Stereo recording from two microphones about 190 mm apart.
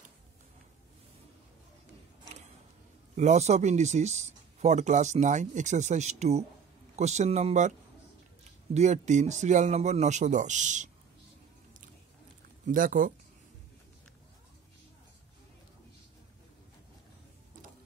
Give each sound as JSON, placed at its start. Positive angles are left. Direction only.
{"t": 3.2, "sound": "speech", "side_deg": -35}
{"t": 8.7, "sound": "speech", "side_deg": -40}
{"t": 12.6, "sound": "speech", "side_deg": -45}